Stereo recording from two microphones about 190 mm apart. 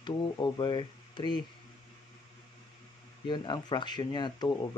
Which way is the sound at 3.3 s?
25° left (ahead or behind).